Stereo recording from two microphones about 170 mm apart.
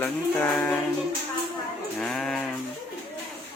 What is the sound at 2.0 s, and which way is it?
Sheep, 5° left (ahead or behind).